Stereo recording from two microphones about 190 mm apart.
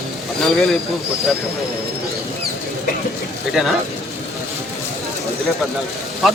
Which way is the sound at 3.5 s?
Centre (ahead or behind).